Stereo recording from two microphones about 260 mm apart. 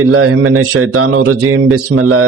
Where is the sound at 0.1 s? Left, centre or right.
Right.